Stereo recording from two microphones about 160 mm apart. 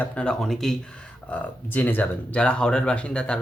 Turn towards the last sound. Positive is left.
turn(degrees=5)  # may be behind; listen again after turning